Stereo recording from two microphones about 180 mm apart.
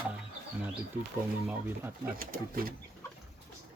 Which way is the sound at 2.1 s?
55° right (ahead or behind).